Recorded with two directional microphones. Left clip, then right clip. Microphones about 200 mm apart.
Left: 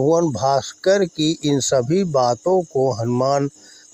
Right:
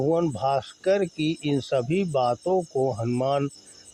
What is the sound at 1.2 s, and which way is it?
Speech, 80° left.